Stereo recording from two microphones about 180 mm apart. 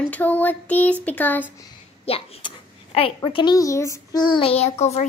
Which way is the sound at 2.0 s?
30° left (ahead or behind).